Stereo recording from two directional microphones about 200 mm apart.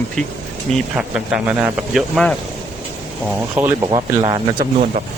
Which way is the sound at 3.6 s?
10° right (ahead or behind).